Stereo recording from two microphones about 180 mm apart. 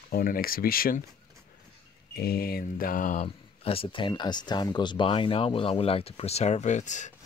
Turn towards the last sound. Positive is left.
turn(degrees=40)  # may be behind; listen again after turning